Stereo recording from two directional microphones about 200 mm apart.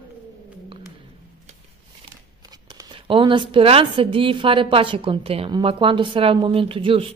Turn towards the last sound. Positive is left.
turn(degrees=-25)  # may be behind; listen again after turning